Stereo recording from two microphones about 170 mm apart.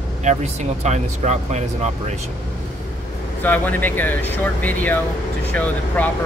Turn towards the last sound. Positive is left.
turn(degrees=10)  # may be behind; listen again after turning